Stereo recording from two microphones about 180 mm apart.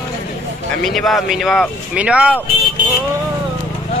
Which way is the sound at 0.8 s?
Centre (ahead or behind).